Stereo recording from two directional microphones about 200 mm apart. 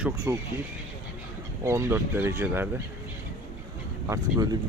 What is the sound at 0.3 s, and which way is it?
Speech, 15° right (ahead or behind).